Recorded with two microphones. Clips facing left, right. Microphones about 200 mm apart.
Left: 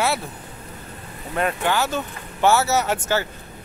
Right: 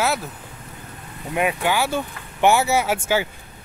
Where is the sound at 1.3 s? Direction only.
10° right (ahead or behind).